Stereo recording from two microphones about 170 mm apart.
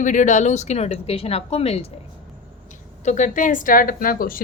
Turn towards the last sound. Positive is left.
turn(degrees=55)  # may be behind; listen again after turning